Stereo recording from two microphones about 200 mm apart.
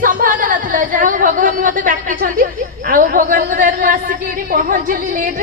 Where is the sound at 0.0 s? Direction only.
40° right (ahead or behind).